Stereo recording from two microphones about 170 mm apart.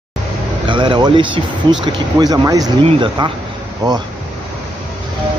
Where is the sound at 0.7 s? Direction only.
30° right (ahead or behind).